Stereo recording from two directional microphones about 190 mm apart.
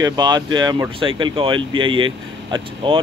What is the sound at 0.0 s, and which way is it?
Speech, 20° right (ahead or behind).